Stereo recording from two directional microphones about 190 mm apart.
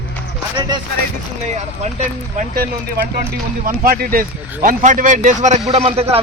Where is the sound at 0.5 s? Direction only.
25° right (ahead or behind).